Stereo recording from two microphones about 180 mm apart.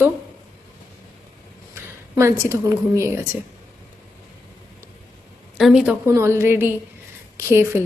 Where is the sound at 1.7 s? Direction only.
15° right (ahead or behind).